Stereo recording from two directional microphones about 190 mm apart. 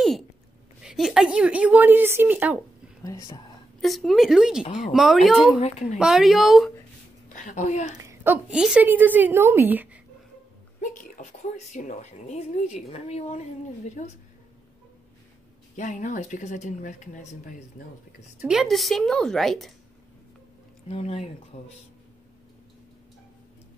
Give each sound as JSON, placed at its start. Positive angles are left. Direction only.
{"t": 0.8, "sound": "a woman's voice", "side_deg": 0}
{"t": 3.0, "sound": "speech", "side_deg": 15}
{"t": 3.8, "sound": "a woman's voice", "side_deg": 0}
{"t": 5.6, "sound": "speech", "side_deg": 35}
{"t": 5.9, "sound": "a woman's voice", "side_deg": 0}
{"t": 7.3, "sound": "speech", "side_deg": 40}
{"t": 7.9, "sound": "a woman's voice", "side_deg": -15}
{"t": 10.8, "sound": "a sound", "side_deg": 45}
{"t": 11.7, "sound": "speech", "side_deg": 40}
{"t": 15.7, "sound": "speech", "side_deg": 40}
{"t": 18.4, "sound": "a woman's voice", "side_deg": 0}
{"t": 20.9, "sound": "speech", "side_deg": 35}